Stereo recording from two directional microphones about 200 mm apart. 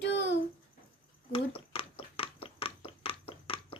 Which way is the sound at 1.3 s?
30° left (ahead or behind).